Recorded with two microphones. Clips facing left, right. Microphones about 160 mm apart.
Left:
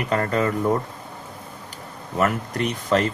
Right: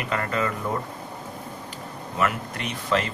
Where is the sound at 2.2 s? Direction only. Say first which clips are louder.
Left 4 dB; 40° left (ahead or behind).